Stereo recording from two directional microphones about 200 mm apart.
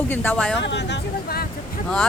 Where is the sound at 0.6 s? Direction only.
60° left (ahead or behind).